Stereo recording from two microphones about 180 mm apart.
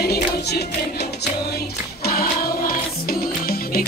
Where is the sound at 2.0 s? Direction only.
55° left (ahead or behind).